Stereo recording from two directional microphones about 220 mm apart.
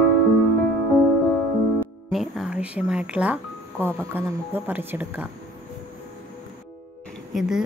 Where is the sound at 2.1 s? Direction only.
Centre (ahead or behind).